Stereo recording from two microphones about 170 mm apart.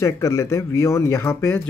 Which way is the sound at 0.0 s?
20° left (ahead or behind).